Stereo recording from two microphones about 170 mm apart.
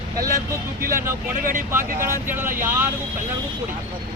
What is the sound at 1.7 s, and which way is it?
Speech, 15° right (ahead or behind).